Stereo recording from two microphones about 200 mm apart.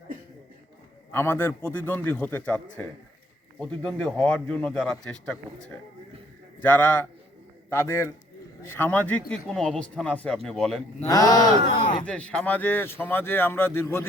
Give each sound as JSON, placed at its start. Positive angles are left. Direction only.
{"t": 1.1, "sound": "a man's voice", "side_deg": 10}
{"t": 11.1, "sound": "speech", "side_deg": 20}
{"t": 12.0, "sound": "speech", "side_deg": 5}